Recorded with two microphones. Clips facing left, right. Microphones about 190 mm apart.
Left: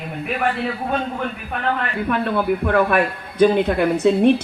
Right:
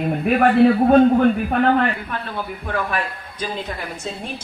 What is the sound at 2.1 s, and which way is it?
A man's voice, 60° left (ahead or behind).